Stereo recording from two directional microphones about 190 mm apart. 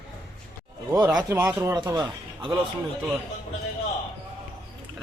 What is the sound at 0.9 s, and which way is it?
Speech, 20° right (ahead or behind).